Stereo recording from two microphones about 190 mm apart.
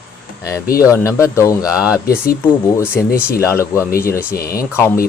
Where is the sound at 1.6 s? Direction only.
5° right (ahead or behind).